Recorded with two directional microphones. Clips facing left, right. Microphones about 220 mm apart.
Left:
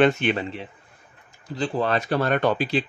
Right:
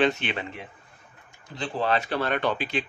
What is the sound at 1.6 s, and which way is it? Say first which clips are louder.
Speech: left 3 dB; 40° left (ahead or behind).